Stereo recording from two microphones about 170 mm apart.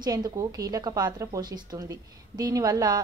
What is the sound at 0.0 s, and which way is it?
Speech, 20° right (ahead or behind).